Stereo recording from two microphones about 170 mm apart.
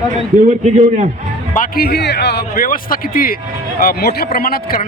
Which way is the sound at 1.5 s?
60° left (ahead or behind).